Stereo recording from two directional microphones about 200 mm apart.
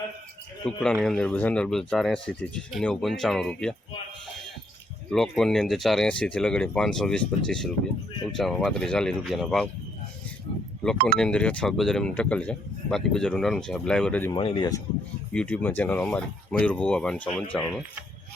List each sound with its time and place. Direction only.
0.6 s speech: 5° left (ahead or behind)
5.1 s speech: centre (ahead or behind)
11.2 s speech: 5° left (ahead or behind)
14.3 s speech: 25° left (ahead or behind)
15.3 s speech: 5° left (ahead or behind)